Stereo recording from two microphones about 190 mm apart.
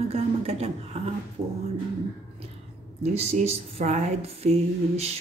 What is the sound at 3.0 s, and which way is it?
Speech, 35° right (ahead or behind).